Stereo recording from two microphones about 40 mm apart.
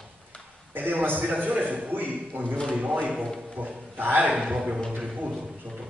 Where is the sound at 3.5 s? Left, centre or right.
Right.